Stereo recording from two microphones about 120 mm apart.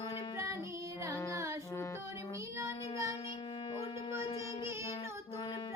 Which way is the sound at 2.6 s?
25° right (ahead or behind).